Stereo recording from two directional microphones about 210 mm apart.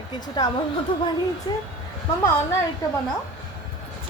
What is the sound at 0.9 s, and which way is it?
Speech, 25° left (ahead or behind).